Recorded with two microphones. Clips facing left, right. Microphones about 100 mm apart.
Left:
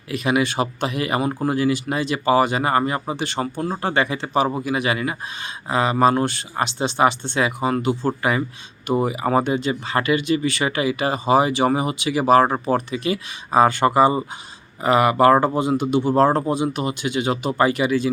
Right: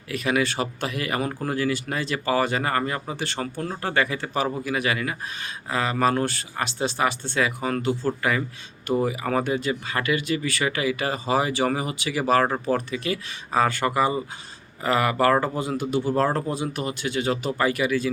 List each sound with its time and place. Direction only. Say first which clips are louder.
0.1 s speech: left 3 dB; 20° left (ahead or behind)